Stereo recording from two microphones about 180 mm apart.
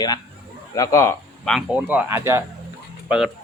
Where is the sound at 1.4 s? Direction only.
Centre (ahead or behind).